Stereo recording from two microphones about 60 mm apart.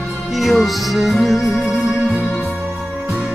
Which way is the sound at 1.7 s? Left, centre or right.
Centre.